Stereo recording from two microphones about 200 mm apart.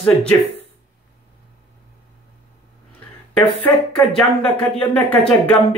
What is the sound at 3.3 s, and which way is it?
Speech, 5° left (ahead or behind).